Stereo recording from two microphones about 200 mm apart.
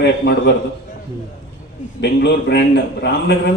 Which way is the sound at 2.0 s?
60° left (ahead or behind).